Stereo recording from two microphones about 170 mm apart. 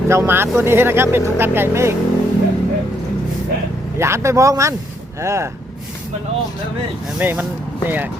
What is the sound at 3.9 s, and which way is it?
Speech, 15° right (ahead or behind).